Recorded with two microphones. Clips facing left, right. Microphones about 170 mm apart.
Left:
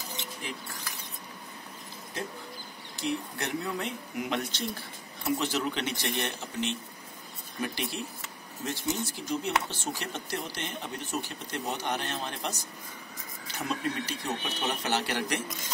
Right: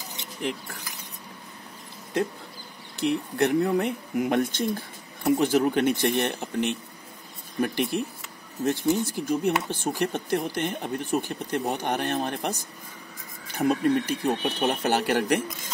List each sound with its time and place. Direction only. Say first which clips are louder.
3.0 s speech: right 9 dB; 60° right (ahead or behind)